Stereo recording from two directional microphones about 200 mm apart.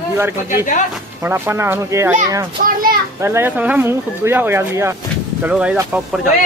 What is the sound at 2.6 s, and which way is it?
Children playing, 40° right (ahead or behind).